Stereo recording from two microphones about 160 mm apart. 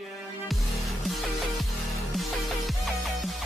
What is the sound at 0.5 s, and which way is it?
Music, centre (ahead or behind).